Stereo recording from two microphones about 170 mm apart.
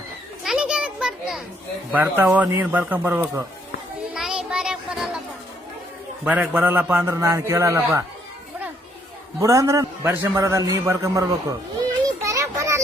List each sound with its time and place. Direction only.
0.4 s children playing: 5° right (ahead or behind)
1.9 s a man's voice: 10° right (ahead or behind)
4.1 s a sound: 5° right (ahead or behind)
6.2 s a man's voice: 10° right (ahead or behind)
9.4 s a man's voice: 20° right (ahead or behind)